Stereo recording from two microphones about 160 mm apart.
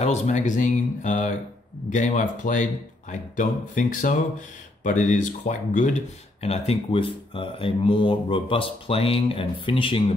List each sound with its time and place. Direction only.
0.0 s speech: 45° left (ahead or behind)